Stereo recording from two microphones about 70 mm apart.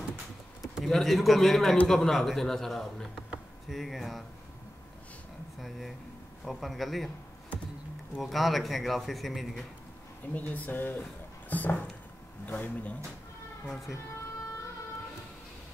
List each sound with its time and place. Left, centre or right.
0.8 s a man's voice: centre
5.6 s a man's voice: centre
8.2 s a man's voice: centre
10.2 s speech: left
13.7 s a man's voice: centre